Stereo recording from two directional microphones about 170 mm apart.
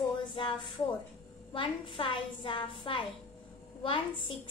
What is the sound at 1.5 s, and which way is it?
A woman's voice, 30° left (ahead or behind).